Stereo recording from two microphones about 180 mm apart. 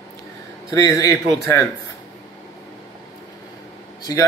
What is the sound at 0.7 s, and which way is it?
Speech, 20° left (ahead or behind).